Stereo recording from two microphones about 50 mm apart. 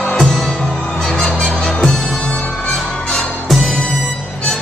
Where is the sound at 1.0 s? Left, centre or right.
Centre.